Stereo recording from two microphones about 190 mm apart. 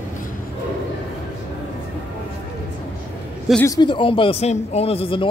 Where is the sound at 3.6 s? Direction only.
20° left (ahead or behind).